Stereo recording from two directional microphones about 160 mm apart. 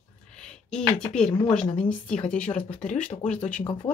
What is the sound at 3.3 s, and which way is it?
Speech, 5° left (ahead or behind).